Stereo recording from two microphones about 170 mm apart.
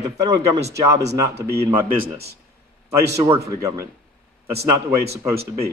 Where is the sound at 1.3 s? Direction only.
70° right (ahead or behind).